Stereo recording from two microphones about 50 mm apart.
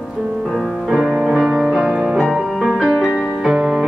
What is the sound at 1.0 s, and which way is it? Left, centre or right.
Music, centre.